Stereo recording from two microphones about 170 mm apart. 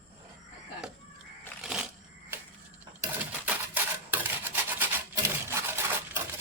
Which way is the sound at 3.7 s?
10° right (ahead or behind).